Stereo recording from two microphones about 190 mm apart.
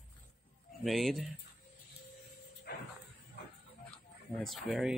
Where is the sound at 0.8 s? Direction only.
Centre (ahead or behind).